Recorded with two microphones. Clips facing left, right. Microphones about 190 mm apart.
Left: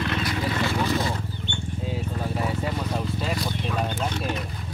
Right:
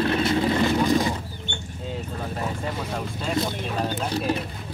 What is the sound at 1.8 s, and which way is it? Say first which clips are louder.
Vehicle: left 1 dB; 5° left (ahead or behind).